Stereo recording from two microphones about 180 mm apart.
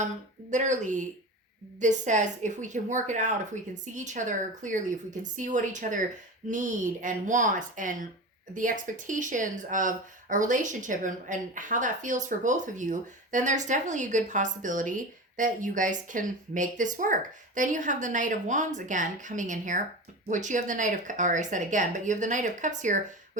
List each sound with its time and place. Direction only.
0.5 s speech: 40° right (ahead or behind)